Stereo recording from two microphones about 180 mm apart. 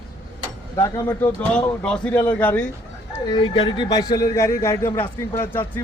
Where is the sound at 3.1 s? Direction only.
25° left (ahead or behind).